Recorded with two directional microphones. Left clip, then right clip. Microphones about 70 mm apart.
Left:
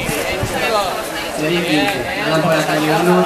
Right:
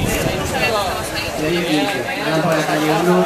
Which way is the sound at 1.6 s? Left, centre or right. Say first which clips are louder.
Left 2 dB; left.